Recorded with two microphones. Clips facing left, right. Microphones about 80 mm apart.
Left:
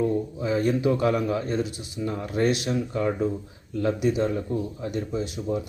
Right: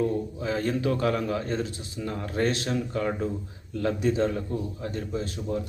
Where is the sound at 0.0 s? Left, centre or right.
Left.